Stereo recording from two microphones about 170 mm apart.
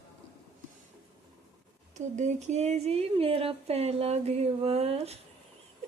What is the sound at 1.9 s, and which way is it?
Speech, 45° right (ahead or behind).